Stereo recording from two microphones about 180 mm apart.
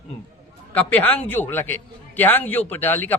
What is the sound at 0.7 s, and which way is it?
A man's voice, 10° left (ahead or behind).